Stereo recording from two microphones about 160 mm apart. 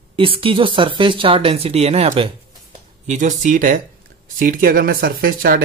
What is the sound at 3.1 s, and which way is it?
Speech, 50° right (ahead or behind).